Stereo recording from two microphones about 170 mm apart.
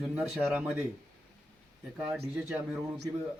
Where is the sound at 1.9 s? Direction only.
10° right (ahead or behind).